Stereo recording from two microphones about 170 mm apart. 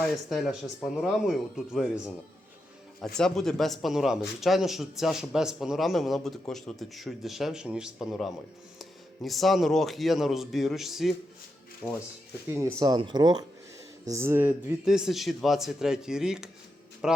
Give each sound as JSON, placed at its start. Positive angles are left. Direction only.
{"t": 0.0, "sound": "speech", "side_deg": 0}
{"t": 3.2, "sound": "speech", "side_deg": 5}
{"t": 12.8, "sound": "speech", "side_deg": -25}